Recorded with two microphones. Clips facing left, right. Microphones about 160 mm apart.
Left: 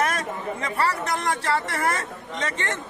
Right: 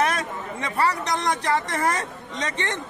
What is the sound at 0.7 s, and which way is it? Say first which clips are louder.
A man's voice: right 3 dB; 20° right (ahead or behind).